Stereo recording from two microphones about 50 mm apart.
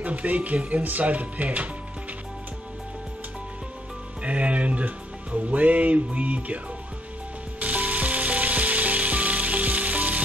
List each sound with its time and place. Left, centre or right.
0.0 s speech: right
4.2 s speech: right
7.6 s sizzle: right